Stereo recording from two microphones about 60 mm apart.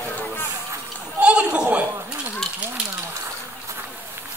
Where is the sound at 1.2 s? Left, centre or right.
Centre.